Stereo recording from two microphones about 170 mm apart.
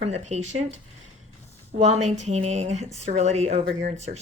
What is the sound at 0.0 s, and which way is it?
Speech, 40° right (ahead or behind).